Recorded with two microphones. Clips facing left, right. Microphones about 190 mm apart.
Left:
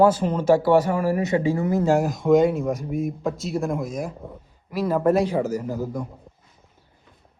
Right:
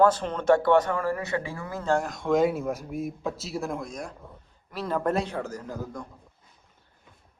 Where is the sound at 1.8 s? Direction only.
5° left (ahead or behind).